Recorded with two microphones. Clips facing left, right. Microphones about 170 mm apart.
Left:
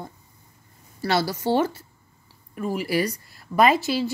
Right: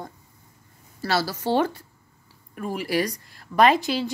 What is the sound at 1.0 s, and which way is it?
Speech, 20° left (ahead or behind).